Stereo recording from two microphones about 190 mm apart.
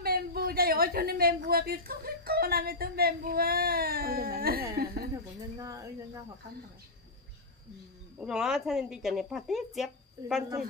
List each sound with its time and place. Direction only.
0.0 s a woman's voice: 55° right (ahead or behind)
5.6 s speech: 15° right (ahead or behind)
8.2 s speech: 5° right (ahead or behind)